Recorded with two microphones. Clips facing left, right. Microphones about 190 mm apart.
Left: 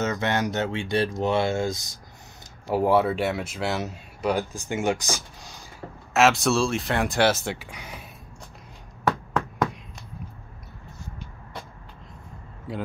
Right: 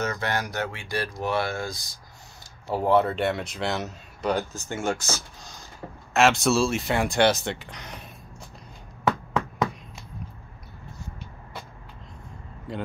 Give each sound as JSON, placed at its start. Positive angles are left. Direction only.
{"t": 0.0, "sound": "speech", "side_deg": 20}
{"t": 2.7, "sound": "speech", "side_deg": 10}
{"t": 6.1, "sound": "speech", "side_deg": 0}
{"t": 12.7, "sound": "speech", "side_deg": 5}